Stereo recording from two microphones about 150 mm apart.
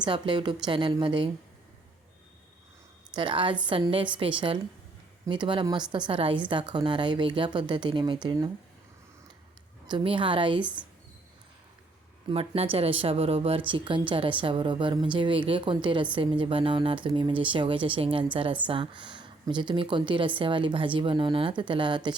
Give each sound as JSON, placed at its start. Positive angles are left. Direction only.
{"t": 0.0, "sound": "a woman's voice", "side_deg": -30}
{"t": 3.2, "sound": "a woman's voice", "side_deg": -35}
{"t": 9.8, "sound": "a woman's voice", "side_deg": -30}
{"t": 12.3, "sound": "a woman's voice", "side_deg": -40}